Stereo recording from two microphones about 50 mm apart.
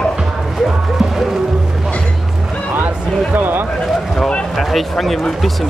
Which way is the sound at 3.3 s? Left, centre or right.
Right.